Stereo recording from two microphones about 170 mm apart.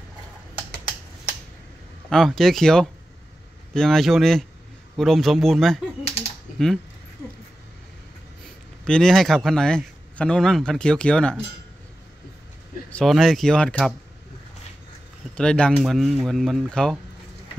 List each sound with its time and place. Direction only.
2.0 s speech: 5° left (ahead or behind)
8.8 s speech: 5° left (ahead or behind)
12.9 s speech: centre (ahead or behind)
15.3 s speech: 5° left (ahead or behind)